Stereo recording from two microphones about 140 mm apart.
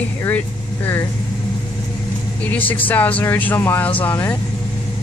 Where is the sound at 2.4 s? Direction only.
10° left (ahead or behind).